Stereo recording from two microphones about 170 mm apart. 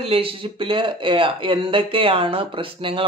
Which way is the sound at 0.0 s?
35° right (ahead or behind).